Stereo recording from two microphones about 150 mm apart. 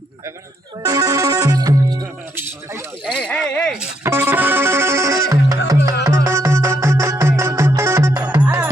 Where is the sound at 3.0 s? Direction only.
10° left (ahead or behind).